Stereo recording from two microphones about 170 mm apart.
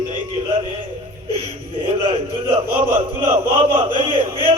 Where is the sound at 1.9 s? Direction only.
35° right (ahead or behind).